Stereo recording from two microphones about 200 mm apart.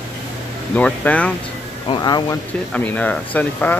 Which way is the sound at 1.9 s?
20° left (ahead or behind).